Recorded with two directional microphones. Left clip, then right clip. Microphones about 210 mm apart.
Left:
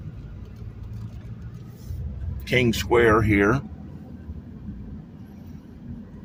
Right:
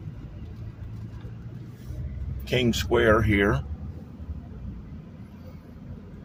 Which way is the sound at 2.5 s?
20° left (ahead or behind).